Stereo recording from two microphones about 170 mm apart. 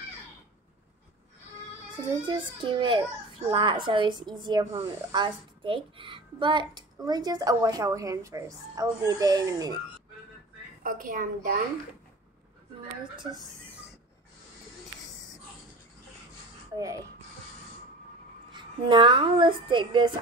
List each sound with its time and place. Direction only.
2.2 s a woman's voice: 25° right (ahead or behind)
10.8 s a woman's voice: 55° right (ahead or behind)
13.1 s a woman's voice: 25° right (ahead or behind)
16.7 s speech: 20° right (ahead or behind)
18.5 s a woman's voice: 30° right (ahead or behind)